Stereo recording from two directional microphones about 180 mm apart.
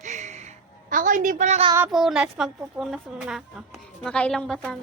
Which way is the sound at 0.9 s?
50° right (ahead or behind).